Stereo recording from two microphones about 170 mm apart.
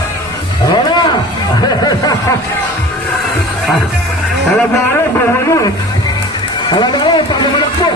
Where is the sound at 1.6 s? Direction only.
25° left (ahead or behind).